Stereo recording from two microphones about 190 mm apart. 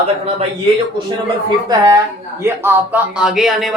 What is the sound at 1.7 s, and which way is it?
Speech, 20° right (ahead or behind).